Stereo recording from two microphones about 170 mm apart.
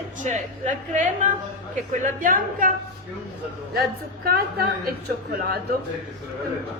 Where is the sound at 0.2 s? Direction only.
45° right (ahead or behind).